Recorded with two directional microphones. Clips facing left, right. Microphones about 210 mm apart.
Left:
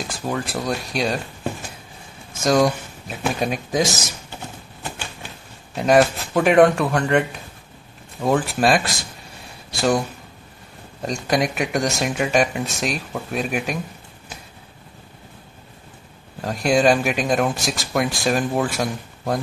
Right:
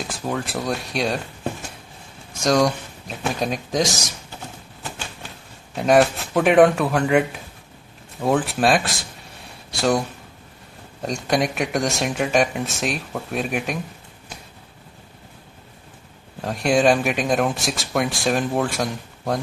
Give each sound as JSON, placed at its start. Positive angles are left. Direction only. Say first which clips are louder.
{"t": 0.1, "sound": "speech", "louder": "left 1 dB", "side_deg": 0}
{"t": 5.8, "sound": "speech", "louder": "even", "side_deg": 0}
{"t": 16.3, "sound": "speech", "louder": "even", "side_deg": 0}